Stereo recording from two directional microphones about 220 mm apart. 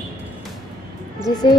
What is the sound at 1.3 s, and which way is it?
Speech, 20° left (ahead or behind).